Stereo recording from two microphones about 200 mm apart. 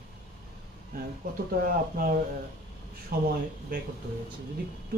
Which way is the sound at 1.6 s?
45° right (ahead or behind).